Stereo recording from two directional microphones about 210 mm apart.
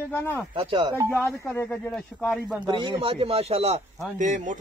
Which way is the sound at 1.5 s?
5° left (ahead or behind).